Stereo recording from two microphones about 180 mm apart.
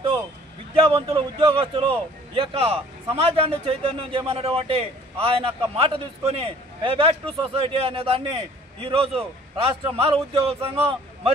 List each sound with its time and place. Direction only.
0.7 s a man's voice: 30° right (ahead or behind)